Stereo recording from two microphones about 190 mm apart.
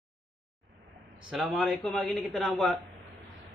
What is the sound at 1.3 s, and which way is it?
A man's voice, centre (ahead or behind).